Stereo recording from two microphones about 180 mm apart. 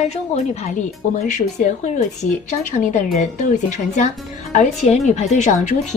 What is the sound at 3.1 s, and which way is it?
A woman's voice, 40° left (ahead or behind).